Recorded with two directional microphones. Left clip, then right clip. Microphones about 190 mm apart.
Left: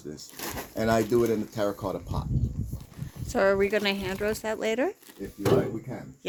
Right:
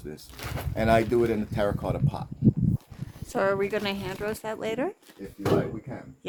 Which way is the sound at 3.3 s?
10° right (ahead or behind).